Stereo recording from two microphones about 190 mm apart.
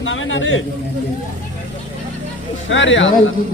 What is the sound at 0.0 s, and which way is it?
Speech, 90° left.